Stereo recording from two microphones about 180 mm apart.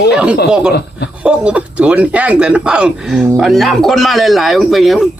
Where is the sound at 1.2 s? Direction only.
5° right (ahead or behind).